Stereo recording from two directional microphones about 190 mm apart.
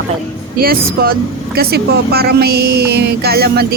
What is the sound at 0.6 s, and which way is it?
Speech, 50° right (ahead or behind).